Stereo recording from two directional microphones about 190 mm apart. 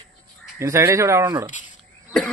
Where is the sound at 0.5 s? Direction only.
15° right (ahead or behind).